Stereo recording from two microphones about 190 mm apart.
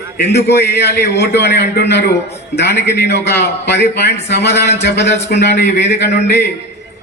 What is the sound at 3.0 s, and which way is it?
A man's voice, 65° left (ahead or behind).